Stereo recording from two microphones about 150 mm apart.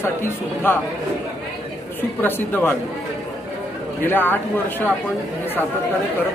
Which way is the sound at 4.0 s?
15° left (ahead or behind).